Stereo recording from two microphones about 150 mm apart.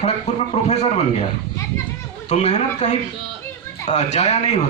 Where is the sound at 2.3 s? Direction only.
50° left (ahead or behind).